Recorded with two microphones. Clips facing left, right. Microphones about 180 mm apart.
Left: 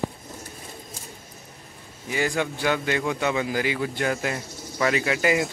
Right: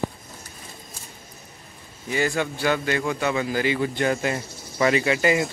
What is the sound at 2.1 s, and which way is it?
Speech, 15° left (ahead or behind).